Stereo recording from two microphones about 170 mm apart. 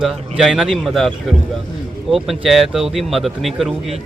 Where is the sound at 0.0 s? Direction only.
Centre (ahead or behind).